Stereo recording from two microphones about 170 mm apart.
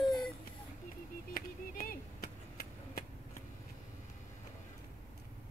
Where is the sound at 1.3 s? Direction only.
55° left (ahead or behind).